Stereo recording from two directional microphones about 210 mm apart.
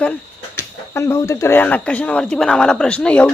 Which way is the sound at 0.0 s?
10° left (ahead or behind).